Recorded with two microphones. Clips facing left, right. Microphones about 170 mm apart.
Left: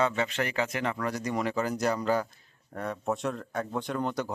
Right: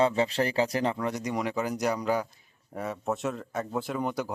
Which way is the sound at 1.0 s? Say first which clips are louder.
Even; 20° right (ahead or behind).